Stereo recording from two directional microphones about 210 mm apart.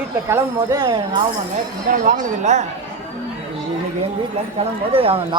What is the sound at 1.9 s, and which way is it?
Speech, 35° right (ahead or behind).